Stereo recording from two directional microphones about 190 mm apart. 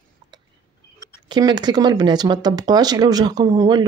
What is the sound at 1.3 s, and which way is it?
Speech, 25° right (ahead or behind).